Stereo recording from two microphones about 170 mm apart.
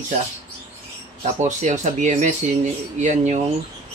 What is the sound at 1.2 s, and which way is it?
Speech, 45° right (ahead or behind).